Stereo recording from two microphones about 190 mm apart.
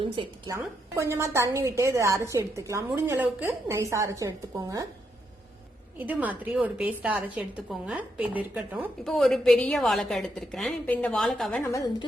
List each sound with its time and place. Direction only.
0.0 s speech: 25° right (ahead or behind)
0.5 s a woman's voice: 15° right (ahead or behind)
6.0 s a woman's voice: 10° right (ahead or behind)
9.0 s a woman's voice: centre (ahead or behind)
11.6 s a woman's voice: 15° left (ahead or behind)